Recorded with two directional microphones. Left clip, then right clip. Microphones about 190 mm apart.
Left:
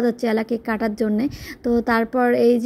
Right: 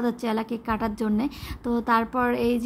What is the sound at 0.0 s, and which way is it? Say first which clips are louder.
A woman's voice: left 6 dB; 15° left (ahead or behind).